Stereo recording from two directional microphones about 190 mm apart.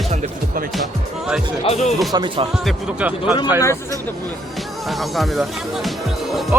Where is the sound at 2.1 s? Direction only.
25° right (ahead or behind).